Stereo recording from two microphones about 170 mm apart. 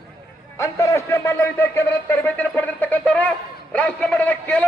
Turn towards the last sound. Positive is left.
turn(degrees=10)  # may be behind; listen again after turning